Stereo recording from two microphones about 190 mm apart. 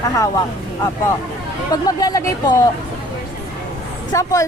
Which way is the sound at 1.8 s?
20° left (ahead or behind).